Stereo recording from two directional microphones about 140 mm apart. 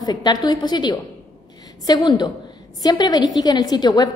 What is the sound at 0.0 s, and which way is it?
A woman's voice, 30° left (ahead or behind).